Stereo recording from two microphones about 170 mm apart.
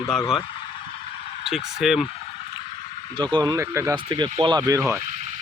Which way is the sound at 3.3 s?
25° right (ahead or behind).